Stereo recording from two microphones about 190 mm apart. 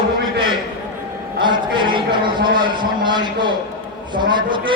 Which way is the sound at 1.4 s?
25° right (ahead or behind).